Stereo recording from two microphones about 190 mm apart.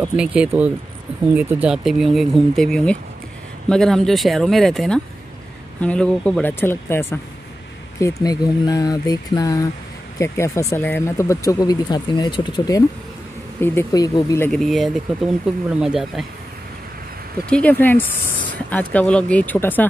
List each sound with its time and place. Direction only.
0.1 s speech: 5° right (ahead or behind); by 14.5 s 15° left (ahead or behind)
14.5 s speech: centre (ahead or behind)
17.5 s speech: 5° left (ahead or behind)